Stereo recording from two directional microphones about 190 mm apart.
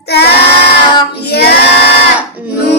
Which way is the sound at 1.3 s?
60° left (ahead or behind).